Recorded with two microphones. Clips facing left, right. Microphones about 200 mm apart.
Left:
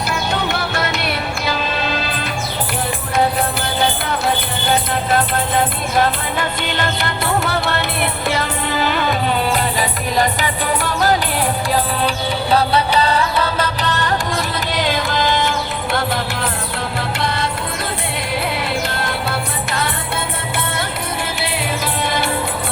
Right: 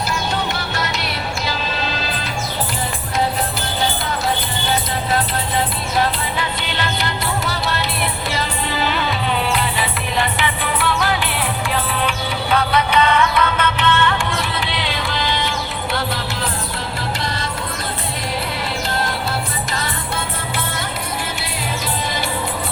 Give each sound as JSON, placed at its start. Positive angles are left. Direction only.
{"t": 0.1, "sound": "music", "side_deg": 55}
{"t": 5.1, "sound": "music", "side_deg": 50}
{"t": 19.0, "sound": "music", "side_deg": 60}